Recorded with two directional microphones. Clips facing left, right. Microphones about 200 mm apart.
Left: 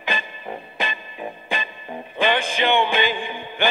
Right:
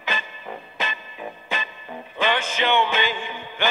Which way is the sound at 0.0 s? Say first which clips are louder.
Left 2 dB; 15° left (ahead or behind).